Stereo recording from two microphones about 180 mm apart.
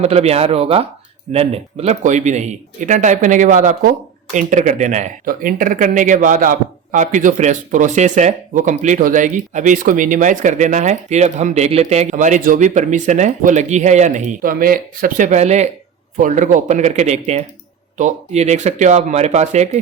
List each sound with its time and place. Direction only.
0.0 s speech: 35° right (ahead or behind)